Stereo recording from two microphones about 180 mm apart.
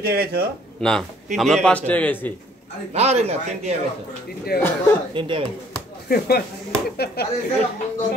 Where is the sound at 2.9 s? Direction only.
35° right (ahead or behind).